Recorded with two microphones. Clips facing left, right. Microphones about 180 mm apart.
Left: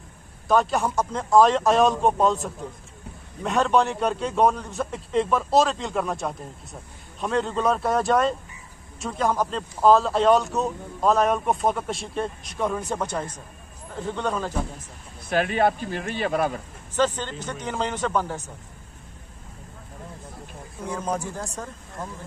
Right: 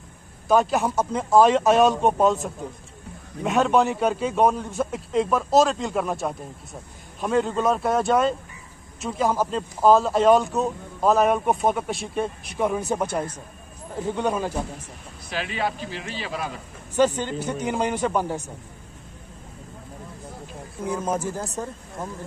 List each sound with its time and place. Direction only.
0.5 s a man's voice: centre (ahead or behind)
15.2 s speech: 50° left (ahead or behind)
16.9 s a man's voice: 10° right (ahead or behind)
20.8 s a man's voice: 5° right (ahead or behind)